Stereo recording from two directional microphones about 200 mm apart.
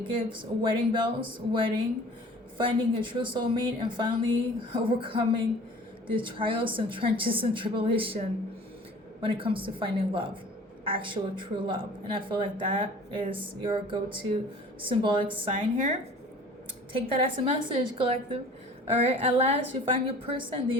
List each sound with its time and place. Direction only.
0.2 s a woman's voice: 25° right (ahead or behind)
9.2 s a woman's voice: 25° right (ahead or behind)
16.9 s a woman's voice: 25° right (ahead or behind)